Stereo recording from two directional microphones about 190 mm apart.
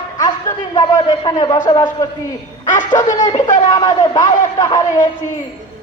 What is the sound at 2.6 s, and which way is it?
Speech, 40° left (ahead or behind).